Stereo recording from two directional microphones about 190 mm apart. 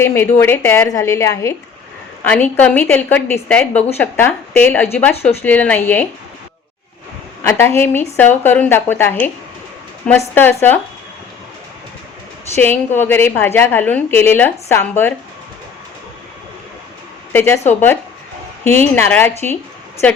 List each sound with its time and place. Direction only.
0.0 s a woman's voice: 10° left (ahead or behind)
7.8 s a woman's voice: 10° left (ahead or behind)
12.5 s a woman's voice: 10° left (ahead or behind)
17.3 s a woman's voice: 10° left (ahead or behind)